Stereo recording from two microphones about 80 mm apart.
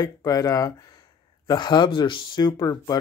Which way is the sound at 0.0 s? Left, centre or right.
Left.